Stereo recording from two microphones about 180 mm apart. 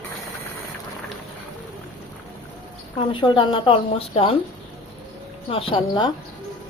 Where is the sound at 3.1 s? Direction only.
25° left (ahead or behind).